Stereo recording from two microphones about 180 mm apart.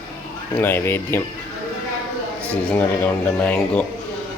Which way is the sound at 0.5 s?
10° left (ahead or behind).